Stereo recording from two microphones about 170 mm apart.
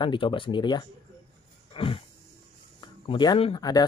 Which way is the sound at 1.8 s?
30° left (ahead or behind).